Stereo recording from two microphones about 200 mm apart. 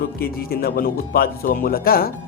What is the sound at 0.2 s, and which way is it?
Speech, 50° left (ahead or behind).